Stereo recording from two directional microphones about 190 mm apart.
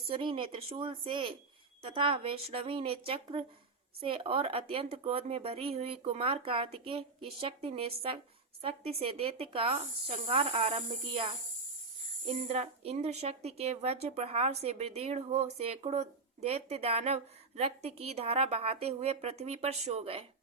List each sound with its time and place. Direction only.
0.1 s a woman's voice: 25° right (ahead or behind)